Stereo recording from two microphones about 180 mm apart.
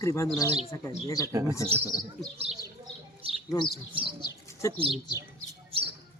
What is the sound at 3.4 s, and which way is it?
Speech, 25° left (ahead or behind).